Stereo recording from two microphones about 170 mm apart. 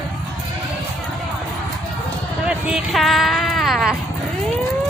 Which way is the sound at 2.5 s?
5° right (ahead or behind).